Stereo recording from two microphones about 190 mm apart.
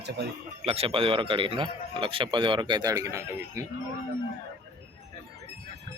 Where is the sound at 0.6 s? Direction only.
30° right (ahead or behind); by 3.7 s 15° right (ahead or behind).